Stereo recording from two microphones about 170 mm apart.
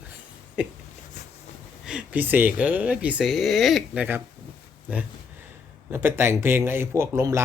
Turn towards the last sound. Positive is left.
turn(degrees=-15)  # may be behind; listen again after turning